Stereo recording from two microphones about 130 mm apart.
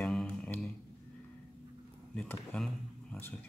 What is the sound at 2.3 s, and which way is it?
Speech, 10° left (ahead or behind).